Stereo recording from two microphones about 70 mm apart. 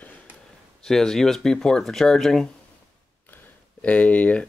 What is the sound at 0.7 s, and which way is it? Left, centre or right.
Speech, centre.